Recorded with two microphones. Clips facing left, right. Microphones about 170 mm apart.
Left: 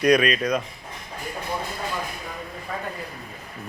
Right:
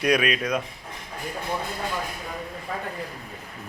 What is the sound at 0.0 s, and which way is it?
Speech, 5° right (ahead or behind).